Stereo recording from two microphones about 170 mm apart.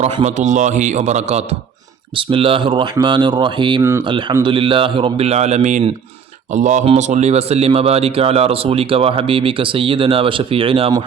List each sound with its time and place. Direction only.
0.0 s a man's voice: 40° right (ahead or behind)